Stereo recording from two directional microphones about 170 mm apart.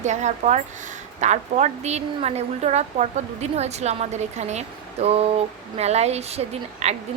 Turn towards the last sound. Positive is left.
turn(degrees=-40)  # may be behind; listen again after turning